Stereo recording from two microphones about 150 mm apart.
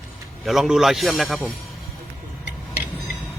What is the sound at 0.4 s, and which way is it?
A man's voice, centre (ahead or behind).